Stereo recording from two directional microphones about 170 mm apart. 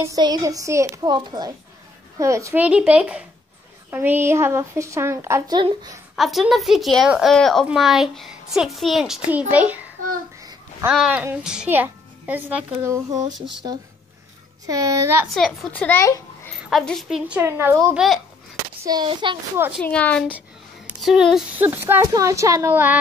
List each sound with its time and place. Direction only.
0.0 s a woman's voice: 20° right (ahead or behind)
6.1 s a woman's voice: centre (ahead or behind)
10.9 s a child's voice: 5° right (ahead or behind)
15.3 s a child's voice: 5° left (ahead or behind)
16.5 s a child's voice: centre (ahead or behind)
17.9 s a woman's voice: centre (ahead or behind)
18.9 s a woman's voice: 25° right (ahead or behind)
19.8 s a child's voice: 10° left (ahead or behind)
21.6 s a child's voice: 10° right (ahead or behind)